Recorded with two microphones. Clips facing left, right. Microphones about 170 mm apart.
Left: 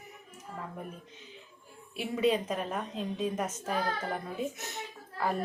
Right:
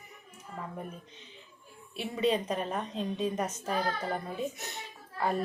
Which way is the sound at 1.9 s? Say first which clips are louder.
Left 1 dB; 5° left (ahead or behind).